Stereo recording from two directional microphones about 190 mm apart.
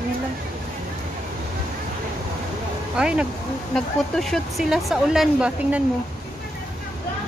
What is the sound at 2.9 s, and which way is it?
Speech, 5° right (ahead or behind).